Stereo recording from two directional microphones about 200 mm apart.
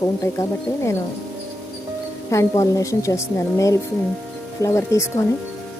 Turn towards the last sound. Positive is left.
turn(degrees=15)  # may be behind; listen again after turning